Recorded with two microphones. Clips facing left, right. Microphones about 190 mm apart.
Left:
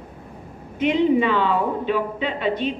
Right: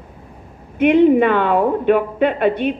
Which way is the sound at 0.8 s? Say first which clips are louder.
Right 7 dB; 55° right (ahead or behind).